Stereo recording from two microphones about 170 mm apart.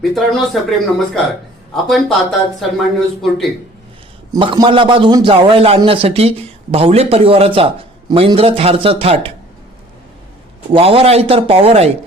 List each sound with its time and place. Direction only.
0.0 s speech: centre (ahead or behind)
3.2 s speech: centre (ahead or behind)
4.4 s a man's voice: 30° right (ahead or behind)
10.7 s a man's voice: 35° right (ahead or behind)